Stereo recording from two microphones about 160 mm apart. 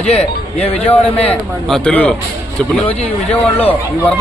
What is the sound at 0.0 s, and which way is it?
Speech, 40° left (ahead or behind).